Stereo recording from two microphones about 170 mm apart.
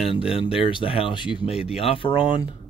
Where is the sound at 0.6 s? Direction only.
30° left (ahead or behind).